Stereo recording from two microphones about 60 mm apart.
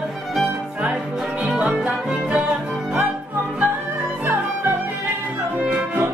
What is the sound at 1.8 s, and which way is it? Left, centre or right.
Music, centre.